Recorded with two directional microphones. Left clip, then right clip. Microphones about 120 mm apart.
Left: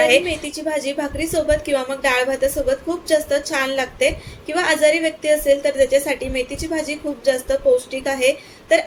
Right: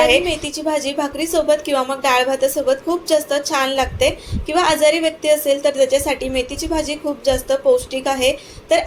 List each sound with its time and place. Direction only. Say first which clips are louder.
0.0 s a woman's voice: right 1 dB; 40° right (ahead or behind)